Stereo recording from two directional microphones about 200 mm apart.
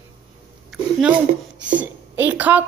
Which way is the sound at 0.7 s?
Centre (ahead or behind).